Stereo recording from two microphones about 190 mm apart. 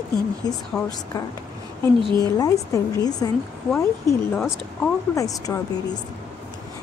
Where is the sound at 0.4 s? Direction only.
20° left (ahead or behind).